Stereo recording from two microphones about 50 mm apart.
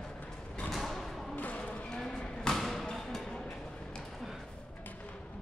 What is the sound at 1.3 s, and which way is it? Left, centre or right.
Music, left.